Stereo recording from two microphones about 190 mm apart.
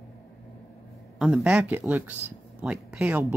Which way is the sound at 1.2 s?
5° right (ahead or behind).